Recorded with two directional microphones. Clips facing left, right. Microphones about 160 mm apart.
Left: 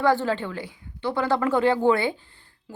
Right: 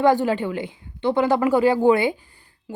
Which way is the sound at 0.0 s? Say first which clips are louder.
Right 4 dB; 15° right (ahead or behind).